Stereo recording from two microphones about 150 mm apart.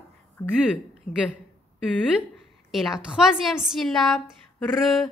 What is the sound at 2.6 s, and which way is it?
A woman's voice, centre (ahead or behind).